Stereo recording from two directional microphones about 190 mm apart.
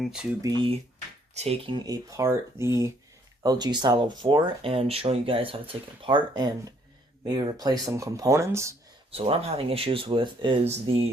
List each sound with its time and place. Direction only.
0.0 s speech: 5° right (ahead or behind)
0.4 s speech: 25° right (ahead or behind)
9.1 s speech: 30° right (ahead or behind)